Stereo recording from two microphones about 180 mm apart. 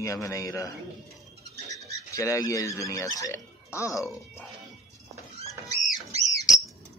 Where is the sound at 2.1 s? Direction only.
15° left (ahead or behind).